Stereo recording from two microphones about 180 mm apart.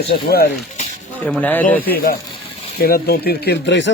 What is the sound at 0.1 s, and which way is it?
Speech, 60° left (ahead or behind).